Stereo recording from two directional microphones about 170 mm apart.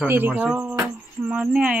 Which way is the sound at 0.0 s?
10° right (ahead or behind).